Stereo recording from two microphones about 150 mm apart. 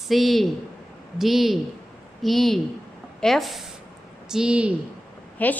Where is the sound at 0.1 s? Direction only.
Centre (ahead or behind).